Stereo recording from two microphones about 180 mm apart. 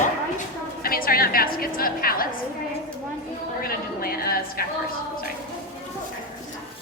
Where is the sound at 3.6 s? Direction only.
55° left (ahead or behind).